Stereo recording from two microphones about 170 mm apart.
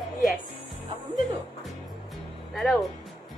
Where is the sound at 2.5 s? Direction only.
Centre (ahead or behind).